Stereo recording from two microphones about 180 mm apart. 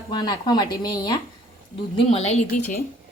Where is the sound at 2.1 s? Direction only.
35° left (ahead or behind).